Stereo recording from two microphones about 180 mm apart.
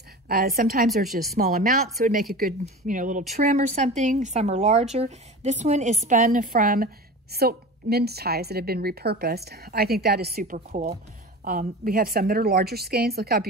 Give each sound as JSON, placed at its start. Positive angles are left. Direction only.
{"t": 0.6, "sound": "a woman's voice", "side_deg": -55}
{"t": 0.8, "sound": "speech", "side_deg": 0}
{"t": 1.3, "sound": "a woman's voice", "side_deg": -55}
{"t": 11.4, "sound": "a woman's voice", "side_deg": -55}